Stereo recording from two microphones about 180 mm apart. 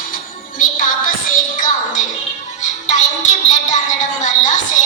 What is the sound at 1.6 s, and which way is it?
Music, 45° left (ahead or behind).